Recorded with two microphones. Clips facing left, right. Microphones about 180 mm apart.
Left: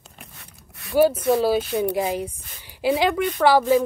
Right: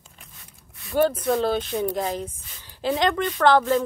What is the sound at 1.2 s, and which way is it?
Speech, 5° left (ahead or behind).